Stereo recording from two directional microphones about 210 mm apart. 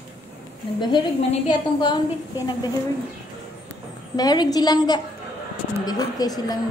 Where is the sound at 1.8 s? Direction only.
20° left (ahead or behind).